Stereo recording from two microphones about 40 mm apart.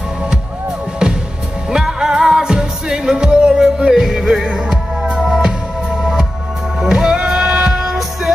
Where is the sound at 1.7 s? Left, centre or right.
Centre.